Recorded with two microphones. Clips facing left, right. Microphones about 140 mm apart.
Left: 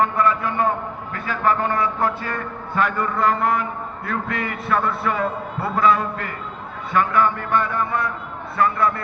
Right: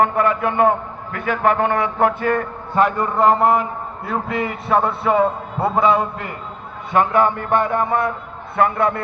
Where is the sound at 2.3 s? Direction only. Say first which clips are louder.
Right 7 dB; 40° right (ahead or behind).